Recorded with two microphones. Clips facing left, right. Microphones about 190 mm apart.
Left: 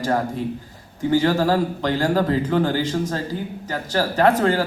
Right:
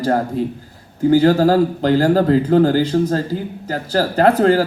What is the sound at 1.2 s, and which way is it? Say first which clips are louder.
Speech: right 6 dB; 40° right (ahead or behind).